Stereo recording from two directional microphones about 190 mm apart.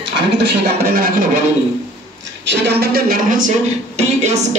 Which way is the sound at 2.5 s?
60° right (ahead or behind).